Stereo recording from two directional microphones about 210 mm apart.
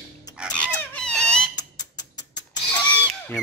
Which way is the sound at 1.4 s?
20° left (ahead or behind).